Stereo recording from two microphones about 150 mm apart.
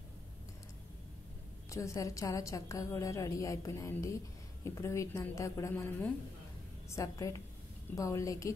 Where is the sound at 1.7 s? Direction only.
20° left (ahead or behind).